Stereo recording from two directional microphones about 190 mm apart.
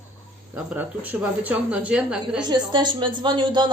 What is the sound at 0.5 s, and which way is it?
Speech, 10° right (ahead or behind).